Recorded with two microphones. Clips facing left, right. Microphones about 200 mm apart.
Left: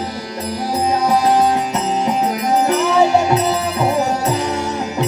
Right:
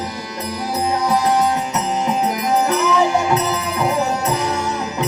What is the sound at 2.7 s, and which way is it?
Music, 30° left (ahead or behind).